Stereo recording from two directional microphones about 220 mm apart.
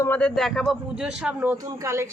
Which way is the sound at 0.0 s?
5° left (ahead or behind).